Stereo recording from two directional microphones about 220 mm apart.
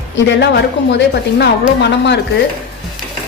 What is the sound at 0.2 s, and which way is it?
A woman's voice, 55° left (ahead or behind).